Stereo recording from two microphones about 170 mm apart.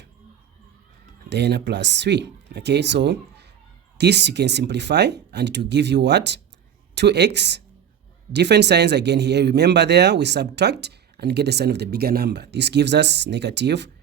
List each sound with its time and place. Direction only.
1.3 s speech: 85° right